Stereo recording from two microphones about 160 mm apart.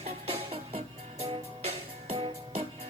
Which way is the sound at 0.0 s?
40° right (ahead or behind).